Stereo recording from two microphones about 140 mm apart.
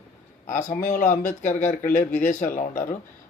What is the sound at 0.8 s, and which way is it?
Speech, 70° left (ahead or behind).